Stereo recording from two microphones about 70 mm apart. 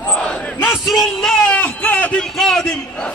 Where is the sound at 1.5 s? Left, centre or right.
Left.